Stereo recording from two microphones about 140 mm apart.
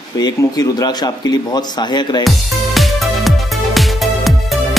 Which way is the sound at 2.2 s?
Centre (ahead or behind).